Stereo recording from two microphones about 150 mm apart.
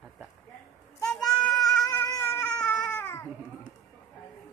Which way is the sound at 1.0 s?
5° left (ahead or behind).